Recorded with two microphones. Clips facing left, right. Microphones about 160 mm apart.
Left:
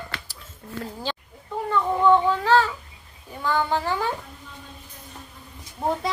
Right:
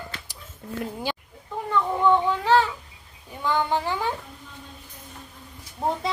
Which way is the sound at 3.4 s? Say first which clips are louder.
Even; 15° right (ahead or behind).